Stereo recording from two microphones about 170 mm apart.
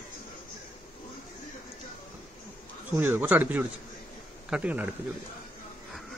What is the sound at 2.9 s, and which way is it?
Speech, 10° right (ahead or behind).